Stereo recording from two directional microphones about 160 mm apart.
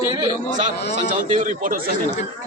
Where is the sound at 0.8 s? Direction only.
90° left.